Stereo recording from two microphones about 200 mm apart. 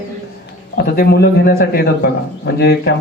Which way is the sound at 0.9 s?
55° left (ahead or behind).